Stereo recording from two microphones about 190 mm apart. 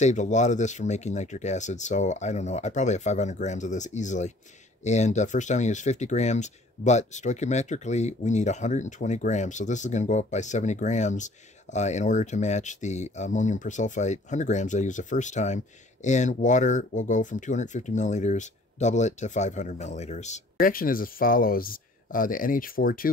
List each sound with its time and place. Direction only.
0.0 s speech: 40° left (ahead or behind)